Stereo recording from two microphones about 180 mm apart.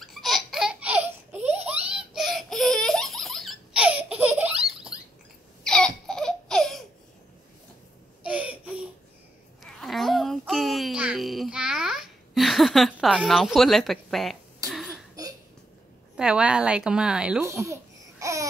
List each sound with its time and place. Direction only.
0.0 s baby laughter: centre (ahead or behind)
4.9 s rodents: 5° right (ahead or behind)
5.6 s laughter: 5° left (ahead or behind)
8.2 s a sound: 5° right (ahead or behind)
14.7 s throat clearing: centre (ahead or behind)
16.2 s a woman's voice: 5° right (ahead or behind)
17.5 s speech: 15° right (ahead or behind)
18.2 s a sound: 15° right (ahead or behind)